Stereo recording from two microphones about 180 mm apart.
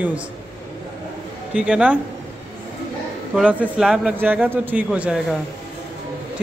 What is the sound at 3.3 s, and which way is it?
A man's voice, 5° right (ahead or behind).